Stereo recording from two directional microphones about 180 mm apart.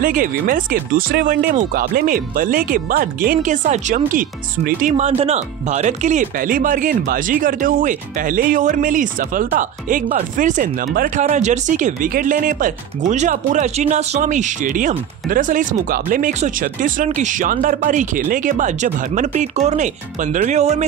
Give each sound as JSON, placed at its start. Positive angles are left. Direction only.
{"t": 0.0, "sound": "speech", "side_deg": -50}